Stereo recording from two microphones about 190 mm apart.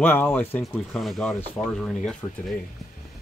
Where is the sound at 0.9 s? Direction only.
Centre (ahead or behind).